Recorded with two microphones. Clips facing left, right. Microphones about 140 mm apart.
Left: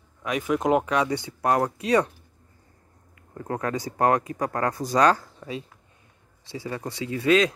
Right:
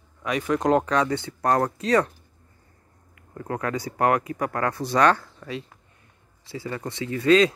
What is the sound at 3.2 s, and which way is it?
Speech, 25° left (ahead or behind).